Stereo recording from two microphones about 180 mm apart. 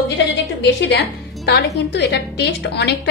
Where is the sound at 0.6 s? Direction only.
70° left (ahead or behind).